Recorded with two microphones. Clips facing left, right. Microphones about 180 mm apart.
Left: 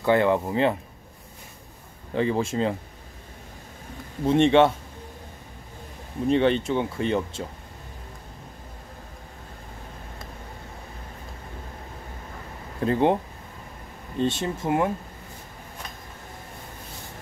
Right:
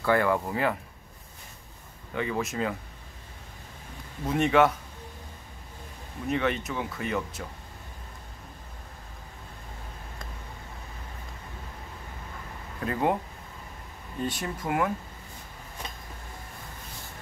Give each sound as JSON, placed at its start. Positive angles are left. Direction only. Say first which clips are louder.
{"t": 0.0, "sound": "speech", "louder": "left 4 dB", "side_deg": 20}
{"t": 2.1, "sound": "speech", "louder": "left 6 dB", "side_deg": 30}
{"t": 4.3, "sound": "speech", "louder": "left 5 dB", "side_deg": 25}
{"t": 6.2, "sound": "speech", "louder": "left 7 dB", "side_deg": 30}
{"t": 12.8, "sound": "speech", "louder": "left 6 dB", "side_deg": 30}